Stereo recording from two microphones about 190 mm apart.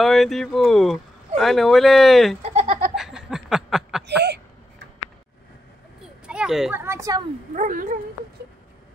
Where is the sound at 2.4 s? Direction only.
35° right (ahead or behind).